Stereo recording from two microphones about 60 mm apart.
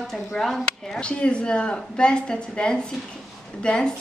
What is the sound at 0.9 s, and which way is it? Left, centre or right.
A woman's voice, centre.